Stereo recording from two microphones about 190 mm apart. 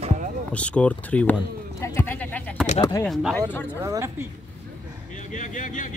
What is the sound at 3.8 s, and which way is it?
Speech, 15° right (ahead or behind).